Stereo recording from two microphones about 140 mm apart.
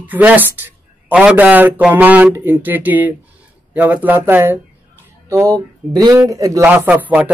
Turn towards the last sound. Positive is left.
turn(degrees=-10)  # may be behind; listen again after turning